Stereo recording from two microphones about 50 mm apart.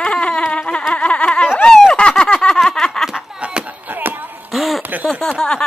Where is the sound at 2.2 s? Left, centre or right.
Centre.